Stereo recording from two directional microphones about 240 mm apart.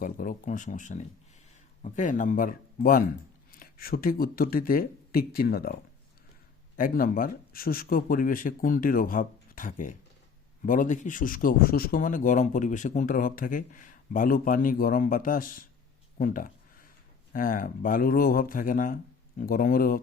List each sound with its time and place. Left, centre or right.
0.0 s speech: left
6.7 s speech: left
16.1 s a sound: left
17.3 s speech: left